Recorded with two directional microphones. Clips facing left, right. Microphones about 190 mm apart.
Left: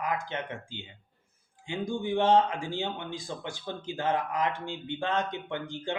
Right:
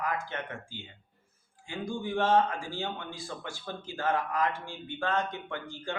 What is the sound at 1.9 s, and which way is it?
Speech, 15° left (ahead or behind).